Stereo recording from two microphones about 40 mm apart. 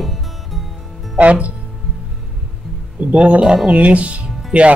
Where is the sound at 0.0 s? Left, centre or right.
Centre.